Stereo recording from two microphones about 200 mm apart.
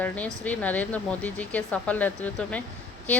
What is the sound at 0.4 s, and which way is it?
A woman's voice, 10° left (ahead or behind).